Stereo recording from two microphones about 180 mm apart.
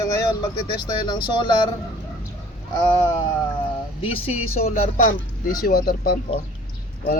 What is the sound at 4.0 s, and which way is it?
Speech, 35° left (ahead or behind).